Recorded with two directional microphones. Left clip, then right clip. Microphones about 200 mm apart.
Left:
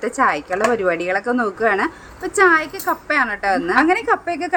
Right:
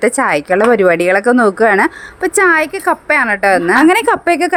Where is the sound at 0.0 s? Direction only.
45° right (ahead or behind).